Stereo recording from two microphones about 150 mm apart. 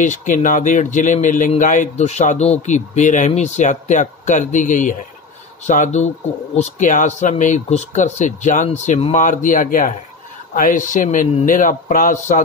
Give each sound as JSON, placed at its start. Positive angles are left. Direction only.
{"t": 0.0, "sound": "speech", "side_deg": 55}